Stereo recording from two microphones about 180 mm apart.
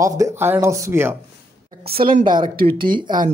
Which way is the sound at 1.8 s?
55° right (ahead or behind).